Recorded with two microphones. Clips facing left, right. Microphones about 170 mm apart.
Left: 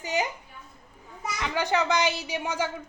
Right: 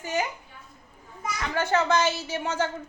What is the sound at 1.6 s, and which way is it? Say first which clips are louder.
A woman's voice: right 2 dB; 15° left (ahead or behind).